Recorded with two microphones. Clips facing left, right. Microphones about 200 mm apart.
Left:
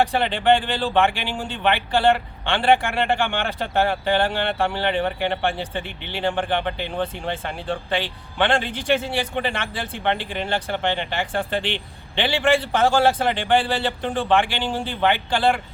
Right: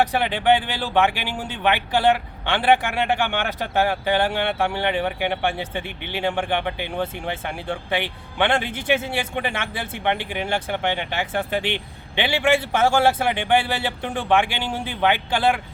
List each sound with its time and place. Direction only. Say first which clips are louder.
0.0 s speech: even; 5° right (ahead or behind)
5.8 s speech: right 2 dB; 55° right (ahead or behind)
6.1 s speech: even; 10° right (ahead or behind)